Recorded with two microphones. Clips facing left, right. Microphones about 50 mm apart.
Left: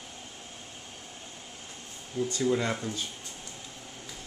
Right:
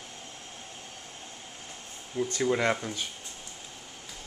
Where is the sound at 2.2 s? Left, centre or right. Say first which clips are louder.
Even; centre.